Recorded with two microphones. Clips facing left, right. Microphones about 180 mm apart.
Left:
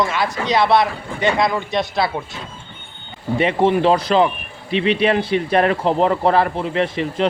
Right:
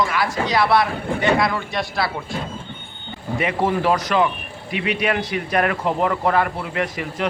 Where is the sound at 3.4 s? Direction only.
25° left (ahead or behind).